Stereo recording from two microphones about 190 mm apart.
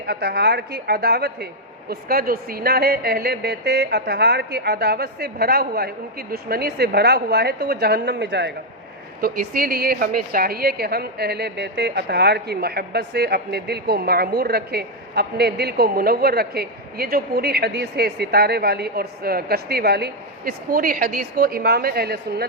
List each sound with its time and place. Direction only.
0.0 s a woman's voice: 55° right (ahead or behind)
9.2 s a woman's voice: 50° right (ahead or behind)